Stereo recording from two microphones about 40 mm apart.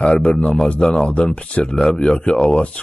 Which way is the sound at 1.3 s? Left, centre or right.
Left.